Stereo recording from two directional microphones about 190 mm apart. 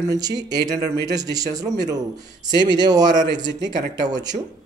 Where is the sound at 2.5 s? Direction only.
20° right (ahead or behind).